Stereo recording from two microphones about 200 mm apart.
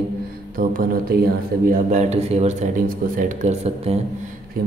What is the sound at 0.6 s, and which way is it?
Speech, 45° right (ahead or behind).